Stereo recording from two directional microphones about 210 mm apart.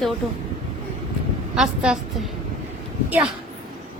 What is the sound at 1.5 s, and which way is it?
A woman's voice, 5° right (ahead or behind).